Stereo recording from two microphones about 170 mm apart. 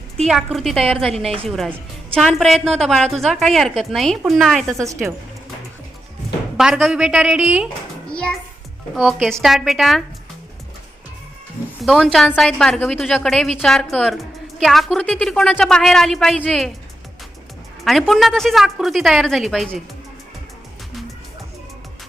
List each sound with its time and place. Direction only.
0.3 s a woman's voice: centre (ahead or behind)
0.9 s a woman's voice: 35° right (ahead or behind)
1.5 s a woman's voice: centre (ahead or behind)
6.6 s a woman's voice: centre (ahead or behind)
8.1 s a child's voice: 5° left (ahead or behind)
11.8 s a woman's voice: centre (ahead or behind)
17.8 s a woman's voice: centre (ahead or behind)